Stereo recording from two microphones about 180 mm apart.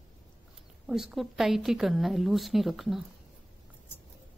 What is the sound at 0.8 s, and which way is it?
A woman's voice, centre (ahead or behind).